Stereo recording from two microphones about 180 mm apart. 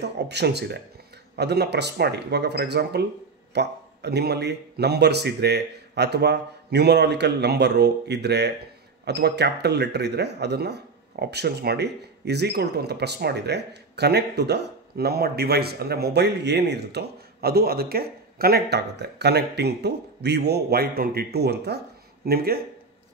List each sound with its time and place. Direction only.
0.0 s a man's voice: 70° right (ahead or behind)